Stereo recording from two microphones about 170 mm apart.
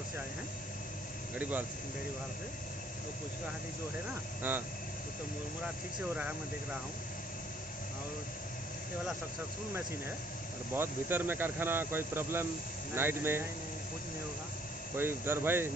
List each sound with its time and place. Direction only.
4.4 s speech: 10° right (ahead or behind)
10.7 s speech: 10° right (ahead or behind)
15.0 s speech: 15° right (ahead or behind)